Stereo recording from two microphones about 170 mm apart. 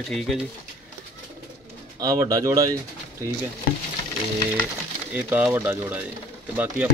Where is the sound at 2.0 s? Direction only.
20° right (ahead or behind).